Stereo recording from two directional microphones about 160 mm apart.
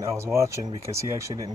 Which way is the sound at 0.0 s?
15° right (ahead or behind).